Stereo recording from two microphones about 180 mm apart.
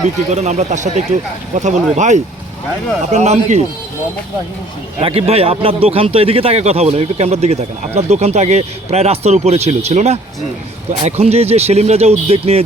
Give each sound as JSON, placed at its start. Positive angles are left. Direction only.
{"t": 0.3, "sound": "a man's voice", "side_deg": -40}
{"t": 4.9, "sound": "a man's voice", "side_deg": -30}